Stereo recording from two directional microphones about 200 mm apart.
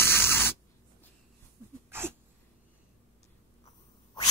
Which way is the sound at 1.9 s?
10° right (ahead or behind).